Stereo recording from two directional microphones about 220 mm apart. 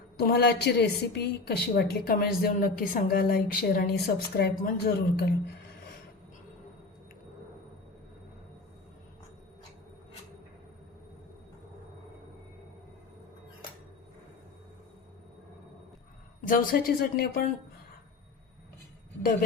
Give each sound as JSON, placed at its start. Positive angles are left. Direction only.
{"t": 0.2, "sound": "a woman's voice", "side_deg": 45}
{"t": 16.5, "sound": "speech", "side_deg": 40}